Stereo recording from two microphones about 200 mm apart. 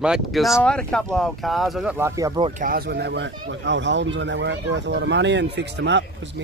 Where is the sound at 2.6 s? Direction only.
45° right (ahead or behind).